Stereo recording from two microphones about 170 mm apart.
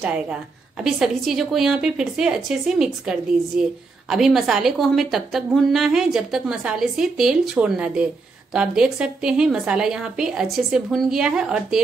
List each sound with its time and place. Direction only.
0.0 s a woman's voice: 5° right (ahead or behind)